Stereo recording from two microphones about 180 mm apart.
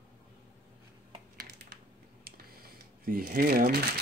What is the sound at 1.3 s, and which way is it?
Computer keyboard, 60° right (ahead or behind).